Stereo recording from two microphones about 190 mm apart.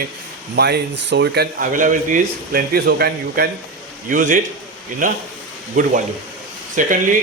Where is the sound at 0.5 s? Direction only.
60° right (ahead or behind).